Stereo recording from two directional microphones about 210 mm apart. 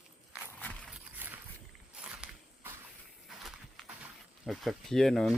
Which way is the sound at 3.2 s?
Centre (ahead or behind).